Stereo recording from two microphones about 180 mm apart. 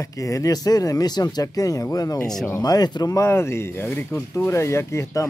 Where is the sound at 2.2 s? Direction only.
5° left (ahead or behind).